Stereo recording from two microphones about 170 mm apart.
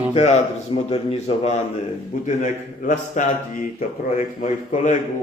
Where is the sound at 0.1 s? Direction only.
40° left (ahead or behind).